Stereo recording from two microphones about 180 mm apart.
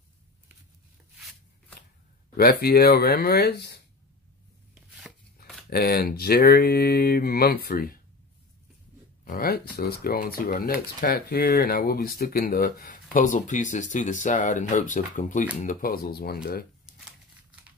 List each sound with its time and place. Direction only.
2.3 s speech: 60° left (ahead or behind)
4.7 s chopping: 5° right (ahead or behind)
5.7 s speech: 60° left (ahead or behind)
9.2 s speech: 55° left (ahead or behind)